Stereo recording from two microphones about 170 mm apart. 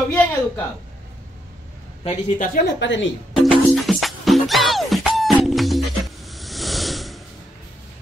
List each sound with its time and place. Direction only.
0.1 s speech: 10° left (ahead or behind)
2.0 s speech: 50° left (ahead or behind)
2.8 s speech: 90° left
3.3 s music: centre (ahead or behind)
6.2 s hiss: centre (ahead or behind)